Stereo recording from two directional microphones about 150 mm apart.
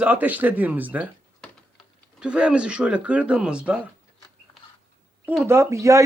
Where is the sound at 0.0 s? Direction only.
10° right (ahead or behind).